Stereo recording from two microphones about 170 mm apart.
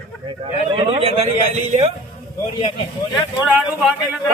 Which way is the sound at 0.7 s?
30° right (ahead or behind).